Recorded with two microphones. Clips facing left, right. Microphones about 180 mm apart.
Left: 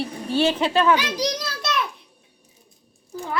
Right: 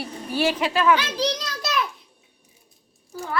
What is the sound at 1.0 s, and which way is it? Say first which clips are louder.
Speech: even; 15° left (ahead or behind).